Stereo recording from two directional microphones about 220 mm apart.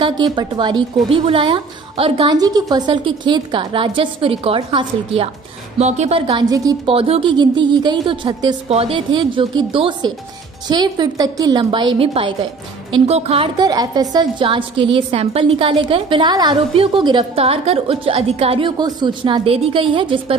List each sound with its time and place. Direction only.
0.0 s a woman's voice: 20° right (ahead or behind)